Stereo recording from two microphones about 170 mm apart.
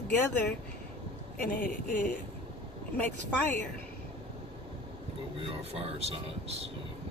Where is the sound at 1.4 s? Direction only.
55° left (ahead or behind).